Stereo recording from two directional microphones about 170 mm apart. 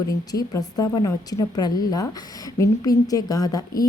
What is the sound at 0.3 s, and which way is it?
A woman's voice, 20° left (ahead or behind).